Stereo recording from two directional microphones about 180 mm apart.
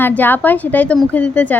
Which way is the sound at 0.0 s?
10° left (ahead or behind).